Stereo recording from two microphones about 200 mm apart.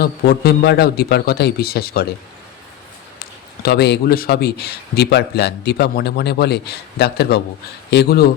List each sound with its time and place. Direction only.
0.0 s a man's voice: 50° left (ahead or behind)
3.2 s a man's voice: 50° left (ahead or behind)